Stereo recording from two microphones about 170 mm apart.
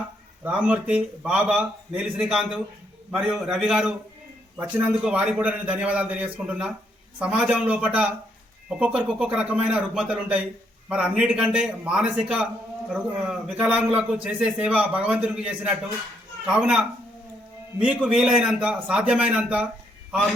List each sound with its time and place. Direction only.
0.4 s a man's voice: 10° right (ahead or behind)